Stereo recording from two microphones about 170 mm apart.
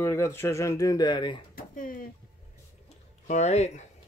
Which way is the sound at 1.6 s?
55° left (ahead or behind).